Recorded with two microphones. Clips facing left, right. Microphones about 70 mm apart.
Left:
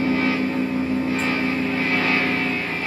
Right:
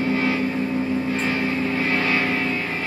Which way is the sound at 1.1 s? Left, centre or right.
Centre.